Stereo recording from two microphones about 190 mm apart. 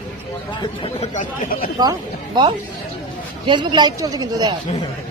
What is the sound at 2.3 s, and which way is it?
Speech, 25° right (ahead or behind).